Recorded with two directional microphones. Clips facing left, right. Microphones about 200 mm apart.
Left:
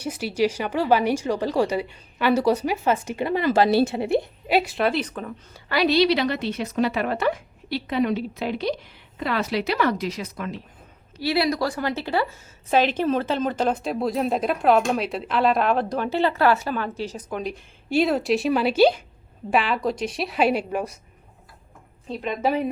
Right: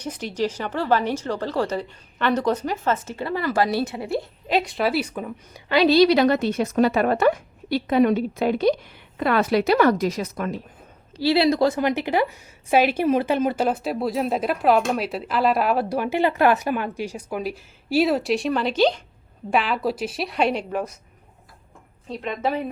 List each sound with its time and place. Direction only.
0.0 s speech: 10° left (ahead or behind)
4.4 s a woman's voice: 5° left (ahead or behind); by 5.9 s 20° right (ahead or behind)
5.9 s a woman's voice: 40° right (ahead or behind)
11.2 s a woman's voice: 30° right (ahead or behind); by 20.9 s 10° left (ahead or behind)
22.1 s speech: 5° left (ahead or behind)